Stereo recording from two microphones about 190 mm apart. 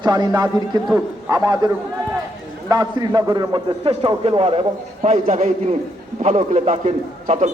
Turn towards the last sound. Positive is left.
turn(degrees=-35)  # may be behind; listen again after turning